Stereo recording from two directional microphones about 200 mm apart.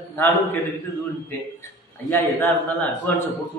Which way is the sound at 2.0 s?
10° left (ahead or behind).